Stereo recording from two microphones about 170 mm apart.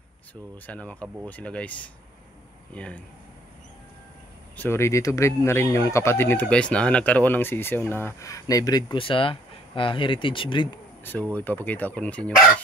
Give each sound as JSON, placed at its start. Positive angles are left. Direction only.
{"t": 0.7, "sound": "speech", "side_deg": 10}
{"t": 4.6, "sound": "speech", "side_deg": 15}
{"t": 11.3, "sound": "speech", "side_deg": 10}